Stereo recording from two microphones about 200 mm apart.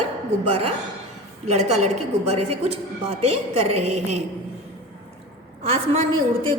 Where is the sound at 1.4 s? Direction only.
35° right (ahead or behind).